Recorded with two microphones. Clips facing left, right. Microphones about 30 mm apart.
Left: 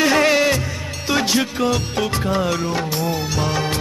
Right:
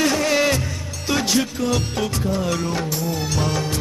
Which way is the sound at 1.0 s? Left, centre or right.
Centre.